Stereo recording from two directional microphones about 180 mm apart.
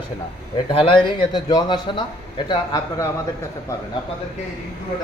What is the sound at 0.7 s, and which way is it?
A man's voice, 30° left (ahead or behind).